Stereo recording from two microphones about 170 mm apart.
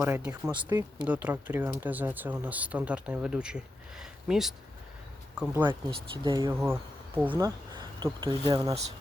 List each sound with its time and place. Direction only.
0.0 s speech: 15° right (ahead or behind)
5.6 s speech: 30° right (ahead or behind)
6.5 s speech: 10° right (ahead or behind)
7.3 s speech: 25° right (ahead or behind)